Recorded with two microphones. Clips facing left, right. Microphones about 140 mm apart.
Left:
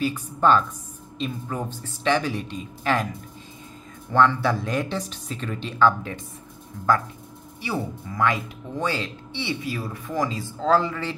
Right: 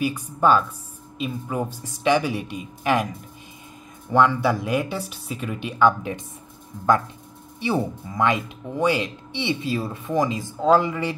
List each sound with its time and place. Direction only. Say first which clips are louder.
0.0 s speech: right 1 dB; 10° right (ahead or behind)
4.1 s speech: right 1 dB; 15° right (ahead or behind)
7.6 s speech: right 5 dB; 20° right (ahead or behind)